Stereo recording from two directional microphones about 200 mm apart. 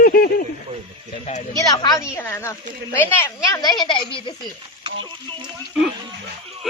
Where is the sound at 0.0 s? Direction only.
45° left (ahead or behind).